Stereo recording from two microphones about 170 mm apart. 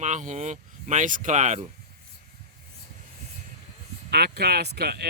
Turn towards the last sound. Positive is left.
turn(degrees=-70)  # may be behind; listen again after turning